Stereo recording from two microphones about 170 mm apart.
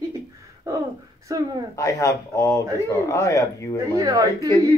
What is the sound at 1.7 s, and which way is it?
Speech, 20° left (ahead or behind).